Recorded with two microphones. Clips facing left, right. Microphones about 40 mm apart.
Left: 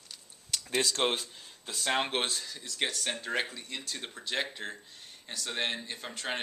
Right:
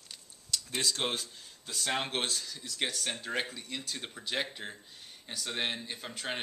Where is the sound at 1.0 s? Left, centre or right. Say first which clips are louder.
Left 4 dB; left.